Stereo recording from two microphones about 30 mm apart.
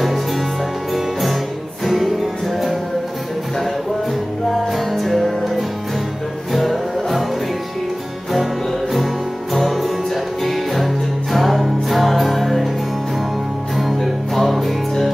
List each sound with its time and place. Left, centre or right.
1.9 s music: centre
4.7 s music: centre
9.7 s music: centre
13.7 s music: centre